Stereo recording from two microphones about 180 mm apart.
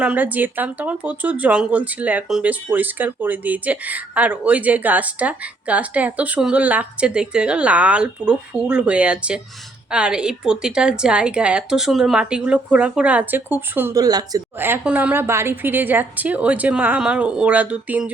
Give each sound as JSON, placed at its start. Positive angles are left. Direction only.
{"t": 0.0, "sound": "speech", "side_deg": -10}